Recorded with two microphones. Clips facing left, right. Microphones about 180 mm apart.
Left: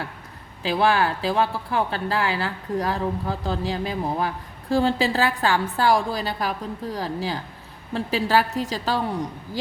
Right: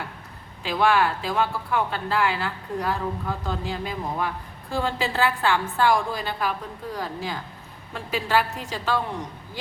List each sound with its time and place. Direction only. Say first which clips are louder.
0.6 s speech: left 1 dB; 35° left (ahead or behind)